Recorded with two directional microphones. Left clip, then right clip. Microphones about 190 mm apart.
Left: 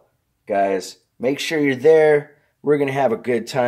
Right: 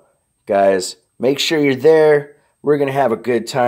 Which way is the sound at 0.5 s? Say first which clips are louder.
Right 6 dB; 40° right (ahead or behind).